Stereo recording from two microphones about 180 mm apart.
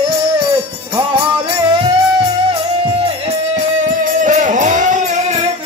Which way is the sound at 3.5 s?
45° right (ahead or behind).